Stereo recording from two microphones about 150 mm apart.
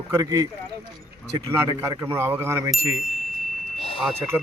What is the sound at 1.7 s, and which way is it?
Speech, 20° right (ahead or behind).